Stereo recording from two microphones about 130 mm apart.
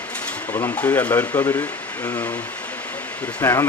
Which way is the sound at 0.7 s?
10° left (ahead or behind).